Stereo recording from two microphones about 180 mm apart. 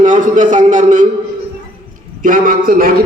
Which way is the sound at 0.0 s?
45° right (ahead or behind).